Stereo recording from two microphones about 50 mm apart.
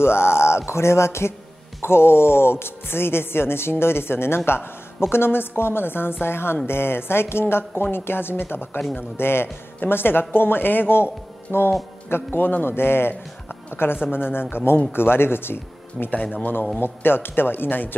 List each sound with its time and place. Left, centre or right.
0.0 s a sound: left
0.7 s a man's voice: left
11.5 s speech: centre
12.1 s a woman's voice: left
16.1 s a man's voice: left
16.8 s a woman's voice: left